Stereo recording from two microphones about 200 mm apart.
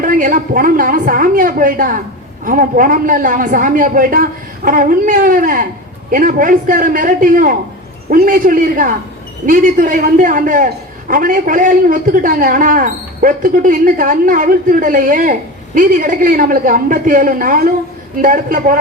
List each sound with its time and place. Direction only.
0.0 s a man's voice: 40° right (ahead or behind)